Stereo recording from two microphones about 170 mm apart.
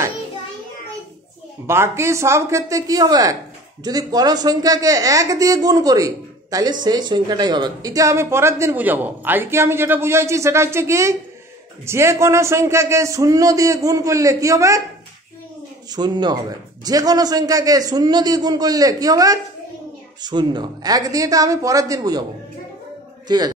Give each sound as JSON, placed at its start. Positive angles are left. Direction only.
{"t": 1.7, "sound": "a man's voice", "side_deg": -15}
{"t": 15.9, "sound": "speech", "side_deg": -25}
{"t": 23.2, "sound": "a woman's voice", "side_deg": -25}